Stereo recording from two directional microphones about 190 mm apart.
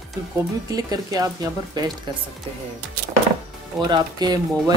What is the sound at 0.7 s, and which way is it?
Speech, 20° right (ahead or behind).